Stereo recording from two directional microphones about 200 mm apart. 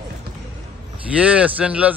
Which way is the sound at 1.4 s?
5° right (ahead or behind).